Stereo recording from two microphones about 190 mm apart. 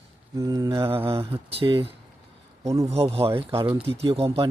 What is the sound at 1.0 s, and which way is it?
Speech, 30° right (ahead or behind).